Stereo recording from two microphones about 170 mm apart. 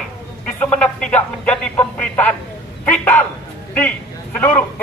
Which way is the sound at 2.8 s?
10° left (ahead or behind).